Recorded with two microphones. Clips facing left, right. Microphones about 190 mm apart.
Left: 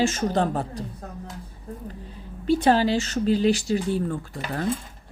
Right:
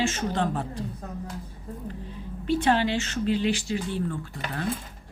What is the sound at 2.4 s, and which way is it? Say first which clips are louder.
Speech: left 4 dB; 35° left (ahead or behind).